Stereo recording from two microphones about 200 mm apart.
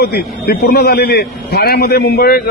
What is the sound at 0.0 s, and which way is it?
A man's voice, 50° left (ahead or behind).